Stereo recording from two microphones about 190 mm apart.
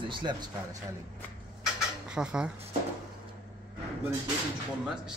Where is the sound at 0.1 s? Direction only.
25° right (ahead or behind).